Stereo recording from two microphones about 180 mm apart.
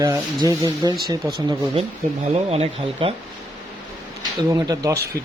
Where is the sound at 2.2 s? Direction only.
35° right (ahead or behind).